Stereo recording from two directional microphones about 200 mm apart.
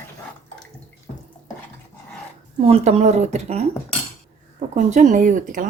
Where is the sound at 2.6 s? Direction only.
30° right (ahead or behind).